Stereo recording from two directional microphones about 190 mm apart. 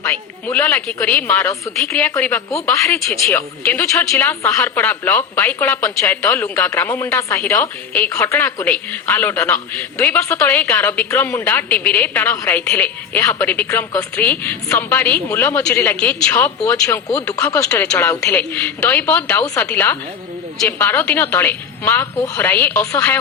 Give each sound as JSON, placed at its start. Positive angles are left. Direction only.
{"t": 0.0, "sound": "speech", "side_deg": 10}
{"t": 17.2, "sound": "speech", "side_deg": 15}